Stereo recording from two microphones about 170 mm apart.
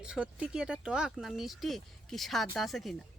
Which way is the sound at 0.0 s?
5° right (ahead or behind).